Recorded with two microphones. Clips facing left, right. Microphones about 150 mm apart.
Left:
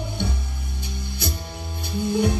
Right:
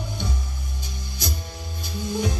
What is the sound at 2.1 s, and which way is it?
Music, 60° left (ahead or behind).